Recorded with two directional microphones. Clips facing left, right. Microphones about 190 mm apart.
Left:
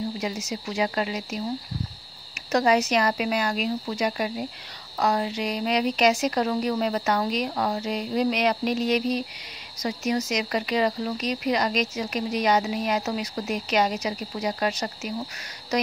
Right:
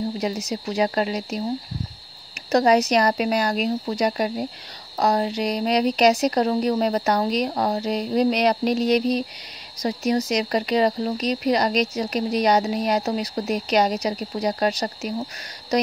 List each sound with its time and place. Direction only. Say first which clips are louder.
0.2 s speech: right 4 dB; 35° right (ahead or behind)
2.5 s speech: right 4 dB; 40° right (ahead or behind)